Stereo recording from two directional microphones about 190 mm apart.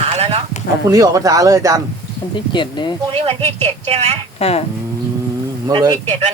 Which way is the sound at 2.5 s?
25° left (ahead or behind).